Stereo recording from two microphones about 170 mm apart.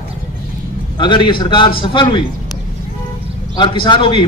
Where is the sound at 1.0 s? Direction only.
30° left (ahead or behind).